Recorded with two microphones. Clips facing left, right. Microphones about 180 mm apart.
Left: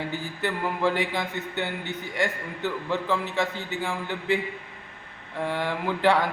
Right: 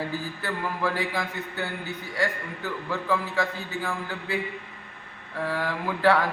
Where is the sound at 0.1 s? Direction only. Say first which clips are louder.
Left 2 dB; 25° left (ahead or behind).